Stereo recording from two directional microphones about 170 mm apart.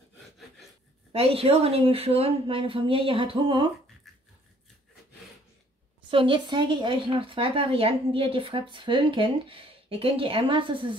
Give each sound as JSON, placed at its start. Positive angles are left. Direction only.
{"t": 1.1, "sound": "a woman's voice", "side_deg": -35}
{"t": 6.0, "sound": "a woman's voice", "side_deg": -30}